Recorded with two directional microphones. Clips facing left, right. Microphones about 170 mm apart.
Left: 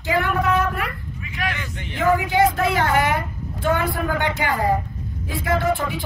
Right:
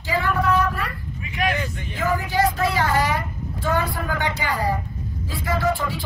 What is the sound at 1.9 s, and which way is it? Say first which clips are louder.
A woman's voice: left 4 dB; 55° left (ahead or behind).